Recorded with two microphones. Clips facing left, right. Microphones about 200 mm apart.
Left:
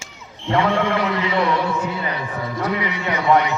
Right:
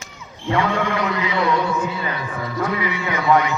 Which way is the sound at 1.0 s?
35° left (ahead or behind).